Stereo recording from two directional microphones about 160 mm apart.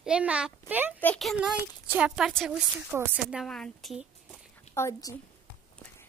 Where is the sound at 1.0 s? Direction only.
5° left (ahead or behind).